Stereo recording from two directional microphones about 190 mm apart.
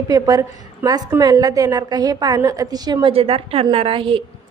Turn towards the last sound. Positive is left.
turn(degrees=-25)  # may be behind; listen again after turning